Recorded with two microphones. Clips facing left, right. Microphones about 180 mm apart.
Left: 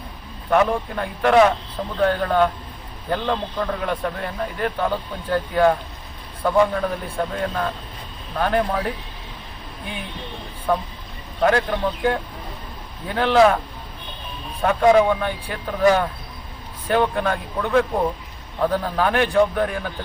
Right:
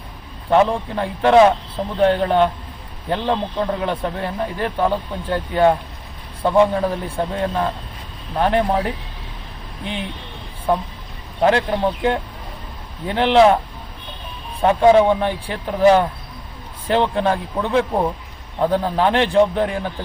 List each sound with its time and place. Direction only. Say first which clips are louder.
0.5 s a man's voice: right 3 dB; 30° right (ahead or behind)
11.4 s a man's voice: right 2 dB; 25° right (ahead or behind)
14.6 s a man's voice: right 3 dB; 30° right (ahead or behind)